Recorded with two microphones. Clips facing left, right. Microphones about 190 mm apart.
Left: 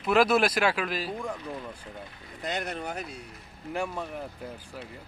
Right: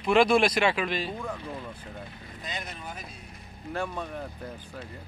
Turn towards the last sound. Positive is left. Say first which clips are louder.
# even
turn(degrees=10)  # may be behind; listen again after turning